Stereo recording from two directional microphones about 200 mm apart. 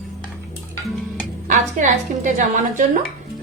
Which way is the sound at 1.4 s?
35° right (ahead or behind).